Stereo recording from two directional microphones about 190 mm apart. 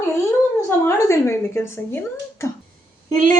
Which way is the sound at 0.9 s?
15° left (ahead or behind).